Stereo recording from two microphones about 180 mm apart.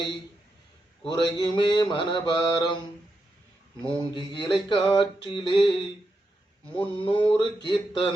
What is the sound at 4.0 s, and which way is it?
Music, 25° left (ahead or behind).